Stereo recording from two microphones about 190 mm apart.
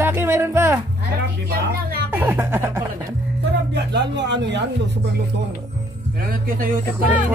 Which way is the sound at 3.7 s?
65° right (ahead or behind).